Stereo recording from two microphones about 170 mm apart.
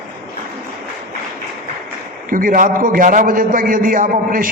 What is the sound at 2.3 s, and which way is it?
A man's voice, 55° right (ahead or behind).